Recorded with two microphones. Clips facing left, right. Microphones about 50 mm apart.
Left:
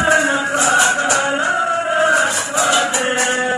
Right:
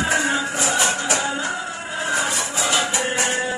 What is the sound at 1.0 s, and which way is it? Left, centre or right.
Music, left.